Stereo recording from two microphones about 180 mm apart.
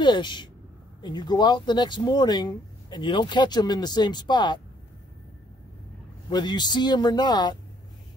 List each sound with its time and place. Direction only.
0.0 s speech: 25° left (ahead or behind)
6.3 s speech: 25° left (ahead or behind)